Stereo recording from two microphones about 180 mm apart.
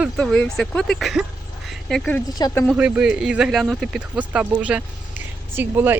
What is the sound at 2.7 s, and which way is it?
Speech, 5° right (ahead or behind).